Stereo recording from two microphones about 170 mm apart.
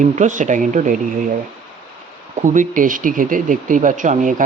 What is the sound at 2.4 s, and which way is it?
Speech, 50° right (ahead or behind).